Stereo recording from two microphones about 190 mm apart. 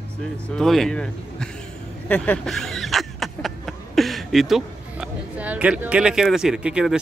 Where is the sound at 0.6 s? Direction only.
Centre (ahead or behind).